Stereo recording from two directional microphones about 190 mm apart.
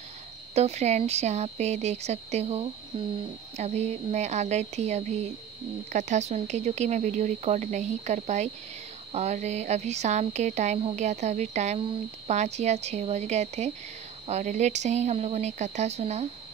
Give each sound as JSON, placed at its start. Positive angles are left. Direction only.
{"t": 0.6, "sound": "speech", "side_deg": -35}